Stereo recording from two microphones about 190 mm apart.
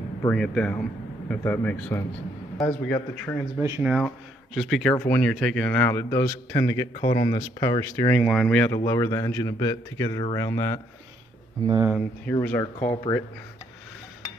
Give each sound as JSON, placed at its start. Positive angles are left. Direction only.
{"t": 0.3, "sound": "a man's voice", "side_deg": 5}
{"t": 3.5, "sound": "speech", "side_deg": -10}
{"t": 4.6, "sound": "a man's voice", "side_deg": 0}
{"t": 4.9, "sound": "speech", "side_deg": 10}
{"t": 8.3, "sound": "a man's voice", "side_deg": 5}
{"t": 8.7, "sound": "speech", "side_deg": 15}
{"t": 11.6, "sound": "speech", "side_deg": -20}
{"t": 12.3, "sound": "speech", "side_deg": 10}